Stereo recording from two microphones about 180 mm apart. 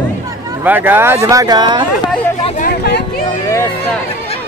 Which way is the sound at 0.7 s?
10° right (ahead or behind).